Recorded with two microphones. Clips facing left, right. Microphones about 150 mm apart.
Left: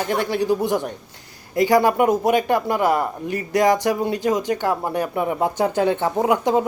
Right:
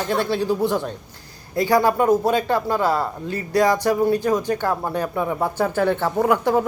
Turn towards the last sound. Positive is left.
turn(degrees=20)  # may be behind; listen again after turning